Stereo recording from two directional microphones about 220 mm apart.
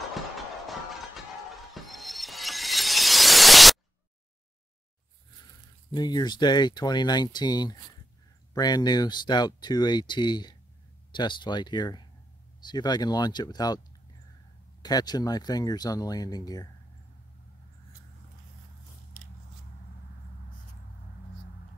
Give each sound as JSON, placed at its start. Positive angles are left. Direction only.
{"t": 1.7, "sound": "music", "side_deg": 0}
{"t": 5.9, "sound": "speech", "side_deg": 20}
{"t": 14.8, "sound": "speech", "side_deg": 20}